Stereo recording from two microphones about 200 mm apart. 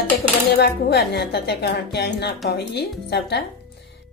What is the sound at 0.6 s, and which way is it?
A woman's voice, 55° left (ahead or behind).